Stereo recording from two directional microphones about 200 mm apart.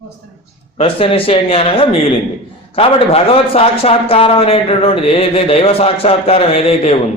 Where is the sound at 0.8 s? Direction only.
30° left (ahead or behind).